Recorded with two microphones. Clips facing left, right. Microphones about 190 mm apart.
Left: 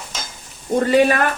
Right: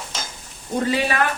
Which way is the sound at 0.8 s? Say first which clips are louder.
Left 6 dB; 50° left (ahead or behind).